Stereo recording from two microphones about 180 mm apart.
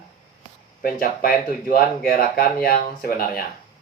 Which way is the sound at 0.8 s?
55° left (ahead or behind).